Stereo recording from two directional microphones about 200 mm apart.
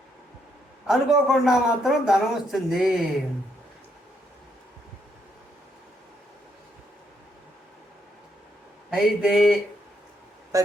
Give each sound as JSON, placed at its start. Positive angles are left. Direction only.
{"t": 0.9, "sound": "a man's voice", "side_deg": 0}
{"t": 8.9, "sound": "a man's voice", "side_deg": -5}
{"t": 10.5, "sound": "speech", "side_deg": -15}